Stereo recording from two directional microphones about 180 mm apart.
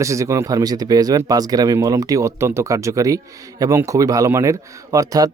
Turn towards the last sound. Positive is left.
turn(degrees=-20)  # may be behind; listen again after turning